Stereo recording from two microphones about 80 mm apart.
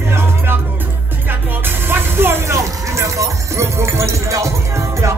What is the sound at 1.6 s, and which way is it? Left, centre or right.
Music, right.